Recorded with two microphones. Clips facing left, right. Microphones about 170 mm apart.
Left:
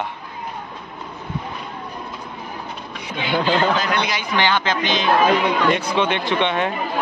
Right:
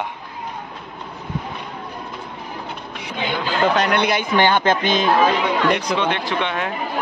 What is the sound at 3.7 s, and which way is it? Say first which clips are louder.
Speech: right 4 dB; 60° right (ahead or behind).